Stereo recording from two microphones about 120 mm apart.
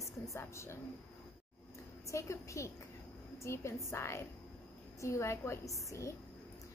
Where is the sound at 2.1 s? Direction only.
25° left (ahead or behind).